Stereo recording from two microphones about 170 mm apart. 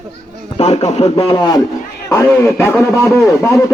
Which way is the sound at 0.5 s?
40° left (ahead or behind).